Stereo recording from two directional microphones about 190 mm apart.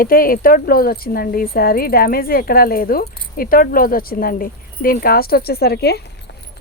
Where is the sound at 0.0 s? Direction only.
50° left (ahead or behind).